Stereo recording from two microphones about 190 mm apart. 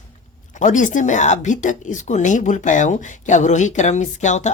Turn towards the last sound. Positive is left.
turn(degrees=40)  # may be behind; listen again after turning